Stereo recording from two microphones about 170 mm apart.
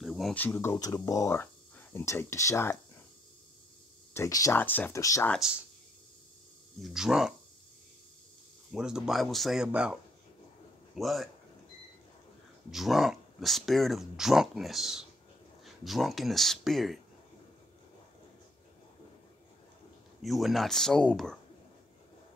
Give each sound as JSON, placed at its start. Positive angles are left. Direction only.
{"t": 0.0, "sound": "speech", "side_deg": 0}
{"t": 4.1, "sound": "speech", "side_deg": 20}
{"t": 5.3, "sound": "speech", "side_deg": -5}
{"t": 6.8, "sound": "speech", "side_deg": -5}
{"t": 8.7, "sound": "speech", "side_deg": -5}
{"t": 11.0, "sound": "speech", "side_deg": 0}
{"t": 12.7, "sound": "speech", "side_deg": 0}
{"t": 20.2, "sound": "speech", "side_deg": 0}